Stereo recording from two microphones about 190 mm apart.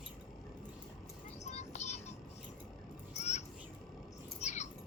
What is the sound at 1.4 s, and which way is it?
Music, 35° left (ahead or behind).